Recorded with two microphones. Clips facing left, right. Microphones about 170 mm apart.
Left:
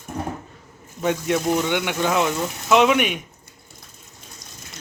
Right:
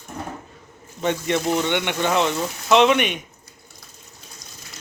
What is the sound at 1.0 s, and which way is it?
Speech, 5° left (ahead or behind).